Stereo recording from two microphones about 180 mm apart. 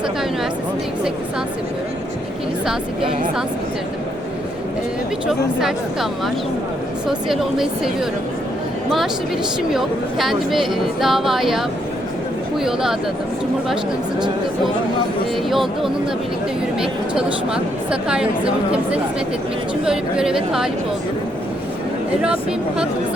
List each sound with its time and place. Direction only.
5.3 s speech: centre (ahead or behind)
9.7 s speech: centre (ahead or behind)
12.6 s speech: centre (ahead or behind)
15.4 s speech: centre (ahead or behind)
19.8 s speech: 5° right (ahead or behind)